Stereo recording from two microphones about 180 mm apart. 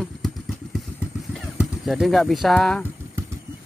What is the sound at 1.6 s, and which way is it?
Speech, centre (ahead or behind).